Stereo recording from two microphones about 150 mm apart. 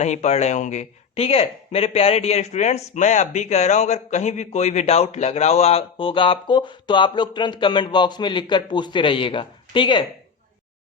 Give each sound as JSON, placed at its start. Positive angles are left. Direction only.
{"t": 0.0, "sound": "speech", "side_deg": 50}